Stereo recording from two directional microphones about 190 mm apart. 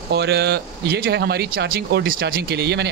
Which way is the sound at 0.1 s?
60° right (ahead or behind).